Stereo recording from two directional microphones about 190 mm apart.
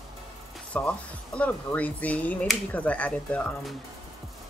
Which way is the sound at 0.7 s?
10° left (ahead or behind).